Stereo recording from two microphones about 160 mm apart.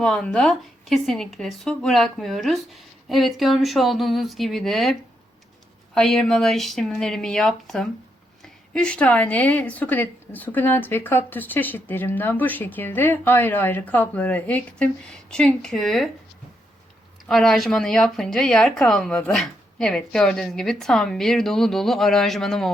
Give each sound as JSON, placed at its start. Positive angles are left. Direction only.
{"t": 0.0, "sound": "speech", "side_deg": 5}
{"t": 17.2, "sound": "speech", "side_deg": 0}